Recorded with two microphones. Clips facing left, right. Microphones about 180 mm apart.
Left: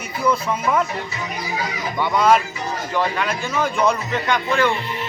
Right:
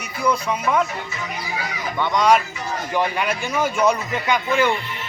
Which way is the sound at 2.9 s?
15° right (ahead or behind).